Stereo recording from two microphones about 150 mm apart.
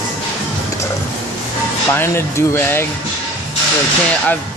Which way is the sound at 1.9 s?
15° left (ahead or behind).